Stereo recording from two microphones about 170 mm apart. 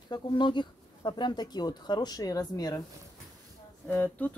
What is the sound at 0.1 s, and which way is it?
Speech, 25° left (ahead or behind).